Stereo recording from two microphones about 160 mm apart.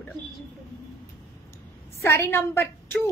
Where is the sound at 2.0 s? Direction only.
15° left (ahead or behind).